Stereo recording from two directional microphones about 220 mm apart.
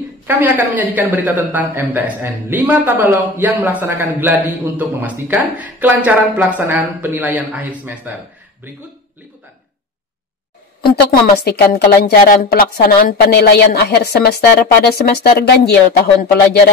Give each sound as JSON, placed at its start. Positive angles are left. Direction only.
{"t": 0.3, "sound": "speech", "side_deg": -10}
{"t": 10.8, "sound": "a woman's voice", "side_deg": 45}